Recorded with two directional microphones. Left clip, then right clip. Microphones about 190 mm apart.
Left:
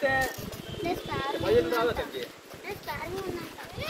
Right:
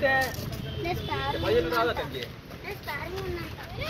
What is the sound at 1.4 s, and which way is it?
Speech, 65° left (ahead or behind).